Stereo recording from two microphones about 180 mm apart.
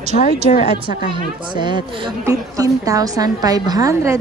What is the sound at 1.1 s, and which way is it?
A woman's voice, 25° right (ahead or behind).